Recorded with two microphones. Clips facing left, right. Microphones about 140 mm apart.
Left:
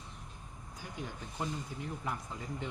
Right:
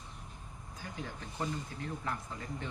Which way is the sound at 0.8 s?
15° left (ahead or behind).